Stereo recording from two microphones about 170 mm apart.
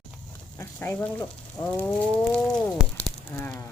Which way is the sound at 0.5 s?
15° left (ahead or behind).